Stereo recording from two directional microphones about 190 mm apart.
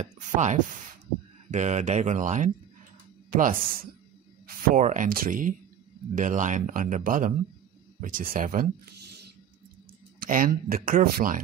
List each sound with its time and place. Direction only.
0.0 s speech: 40° right (ahead or behind)
10.2 s speech: 50° right (ahead or behind)